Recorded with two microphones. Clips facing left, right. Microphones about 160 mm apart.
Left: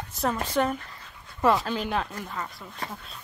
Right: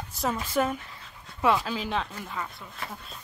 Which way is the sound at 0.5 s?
5° right (ahead or behind).